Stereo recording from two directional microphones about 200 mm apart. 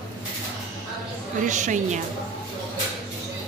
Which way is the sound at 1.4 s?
40° right (ahead or behind).